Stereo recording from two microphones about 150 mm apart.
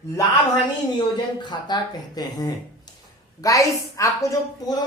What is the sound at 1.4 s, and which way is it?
Speech, 30° left (ahead or behind).